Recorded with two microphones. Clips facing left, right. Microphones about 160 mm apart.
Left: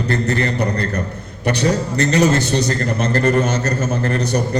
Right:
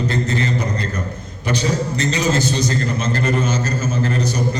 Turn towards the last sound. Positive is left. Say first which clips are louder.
# left 2 dB
turn(degrees=65)  # may be behind; listen again after turning